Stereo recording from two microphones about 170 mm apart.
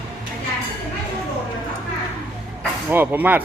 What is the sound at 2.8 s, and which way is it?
Speech, 10° right (ahead or behind).